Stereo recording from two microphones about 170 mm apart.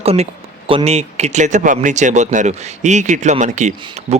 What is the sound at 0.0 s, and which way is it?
Speech, 35° right (ahead or behind).